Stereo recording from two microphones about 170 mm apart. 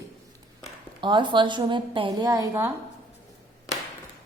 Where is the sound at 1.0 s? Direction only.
30° right (ahead or behind).